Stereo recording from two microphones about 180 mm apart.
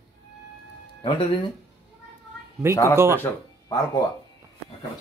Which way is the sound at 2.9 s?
15° right (ahead or behind).